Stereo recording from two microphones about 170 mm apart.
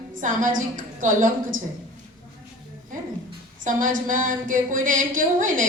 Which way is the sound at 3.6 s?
50° right (ahead or behind).